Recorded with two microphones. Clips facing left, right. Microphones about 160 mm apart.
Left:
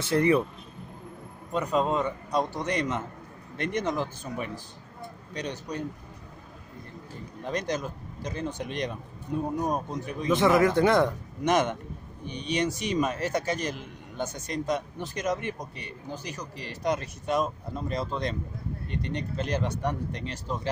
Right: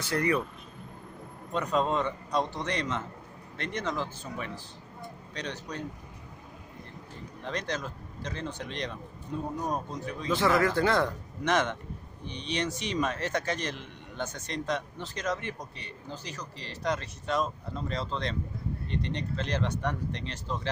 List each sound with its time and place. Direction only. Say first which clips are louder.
0.0 s speech: left 5 dB; 25° left (ahead or behind)
1.5 s speech: left 2 dB; 5° left (ahead or behind)
7.4 s speech: left 4 dB; 15° left (ahead or behind)